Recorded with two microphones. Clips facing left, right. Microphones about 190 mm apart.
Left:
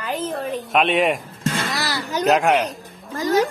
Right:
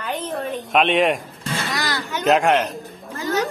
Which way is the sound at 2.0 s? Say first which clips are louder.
Left 4 dB; 35° left (ahead or behind).